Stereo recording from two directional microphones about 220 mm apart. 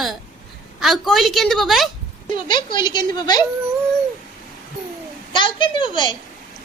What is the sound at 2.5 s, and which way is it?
Speech, 20° left (ahead or behind).